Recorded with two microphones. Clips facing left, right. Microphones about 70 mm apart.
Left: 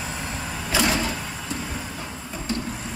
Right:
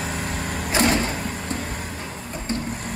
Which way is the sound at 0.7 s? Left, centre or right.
Right.